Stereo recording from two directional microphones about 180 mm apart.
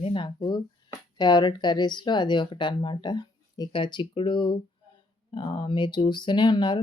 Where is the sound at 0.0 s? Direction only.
30° left (ahead or behind).